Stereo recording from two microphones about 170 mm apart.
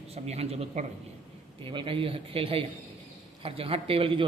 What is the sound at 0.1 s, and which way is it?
Speech, 40° right (ahead or behind).